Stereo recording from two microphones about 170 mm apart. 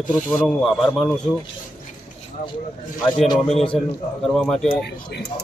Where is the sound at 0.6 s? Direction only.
Centre (ahead or behind).